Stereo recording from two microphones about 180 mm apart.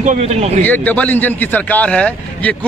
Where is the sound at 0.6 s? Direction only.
10° left (ahead or behind).